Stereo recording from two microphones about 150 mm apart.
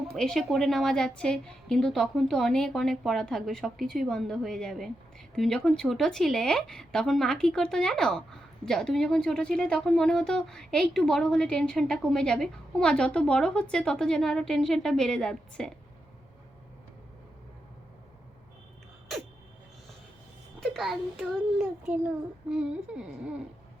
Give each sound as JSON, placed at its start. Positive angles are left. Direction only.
{"t": 0.2, "sound": "speech", "side_deg": 0}
{"t": 20.6, "sound": "a sound", "side_deg": 0}
{"t": 21.6, "sound": "speech", "side_deg": -5}